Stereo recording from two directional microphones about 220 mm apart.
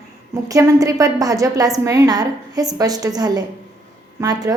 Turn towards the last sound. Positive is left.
turn(degrees=-15)  # may be behind; listen again after turning